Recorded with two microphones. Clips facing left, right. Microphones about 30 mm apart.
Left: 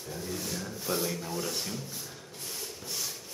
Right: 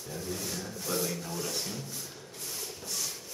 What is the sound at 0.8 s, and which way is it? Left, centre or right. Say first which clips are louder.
Rub: left 1 dB; centre.